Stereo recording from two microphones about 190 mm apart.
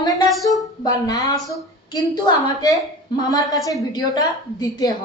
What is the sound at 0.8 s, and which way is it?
Speech, 20° left (ahead or behind).